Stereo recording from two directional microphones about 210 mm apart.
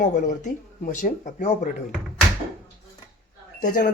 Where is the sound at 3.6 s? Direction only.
40° left (ahead or behind).